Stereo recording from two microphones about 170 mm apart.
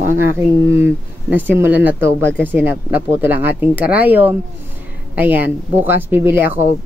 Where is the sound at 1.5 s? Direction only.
10° right (ahead or behind).